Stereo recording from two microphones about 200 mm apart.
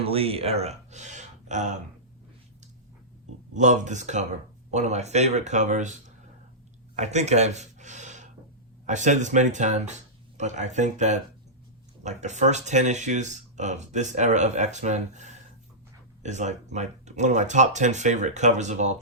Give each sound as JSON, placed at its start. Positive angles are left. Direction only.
{"t": 0.0, "sound": "speech", "side_deg": -30}
{"t": 3.5, "sound": "speech", "side_deg": -35}